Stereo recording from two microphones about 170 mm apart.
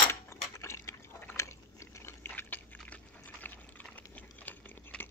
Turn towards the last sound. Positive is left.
turn(degrees=10)  # may be behind; listen again after turning